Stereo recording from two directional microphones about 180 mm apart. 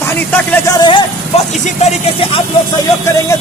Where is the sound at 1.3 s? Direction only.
35° left (ahead or behind).